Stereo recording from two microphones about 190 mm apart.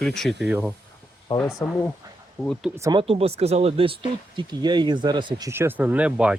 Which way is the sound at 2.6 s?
15° right (ahead or behind).